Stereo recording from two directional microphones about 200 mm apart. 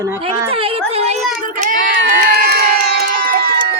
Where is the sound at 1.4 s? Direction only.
40° right (ahead or behind).